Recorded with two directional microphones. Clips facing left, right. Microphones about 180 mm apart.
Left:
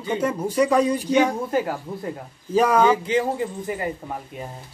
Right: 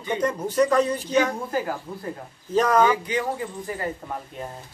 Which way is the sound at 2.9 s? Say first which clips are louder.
Left 5 dB; 30° left (ahead or behind).